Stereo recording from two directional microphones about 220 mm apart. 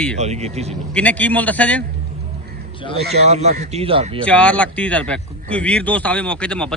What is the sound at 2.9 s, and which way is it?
Speech, 45° right (ahead or behind).